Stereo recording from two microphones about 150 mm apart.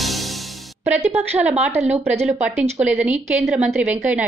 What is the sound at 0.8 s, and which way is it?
A woman's voice, 15° right (ahead or behind).